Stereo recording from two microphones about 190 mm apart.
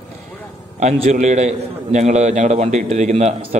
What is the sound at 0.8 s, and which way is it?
A man's voice, 40° right (ahead or behind).